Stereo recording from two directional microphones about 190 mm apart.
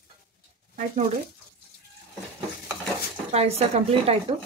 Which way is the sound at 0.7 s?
40° right (ahead or behind).